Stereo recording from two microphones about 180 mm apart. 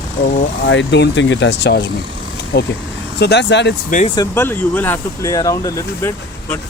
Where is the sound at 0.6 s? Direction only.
85° left; by 1.9 s 65° left (ahead or behind).